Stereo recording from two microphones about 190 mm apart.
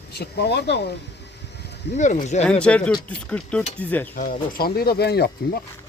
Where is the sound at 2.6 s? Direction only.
5° left (ahead or behind).